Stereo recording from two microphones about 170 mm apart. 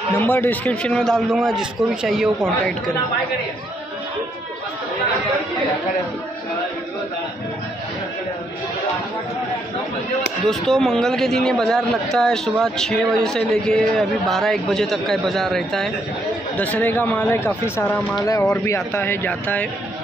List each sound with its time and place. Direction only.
0.2 s a man's voice: 10° left (ahead or behind)
10.4 s a man's voice: centre (ahead or behind)